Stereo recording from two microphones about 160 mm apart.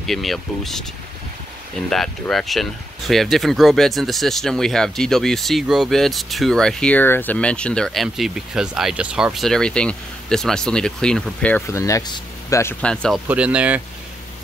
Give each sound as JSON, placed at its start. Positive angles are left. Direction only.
{"t": 0.0, "sound": "speech", "side_deg": 0}
{"t": 1.9, "sound": "speech", "side_deg": 0}
{"t": 12.8, "sound": "speech", "side_deg": 5}
{"t": 13.3, "sound": "speech", "side_deg": -10}